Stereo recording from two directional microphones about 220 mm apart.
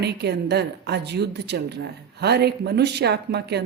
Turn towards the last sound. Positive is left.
turn(degrees=-50)  # may be behind; listen again after turning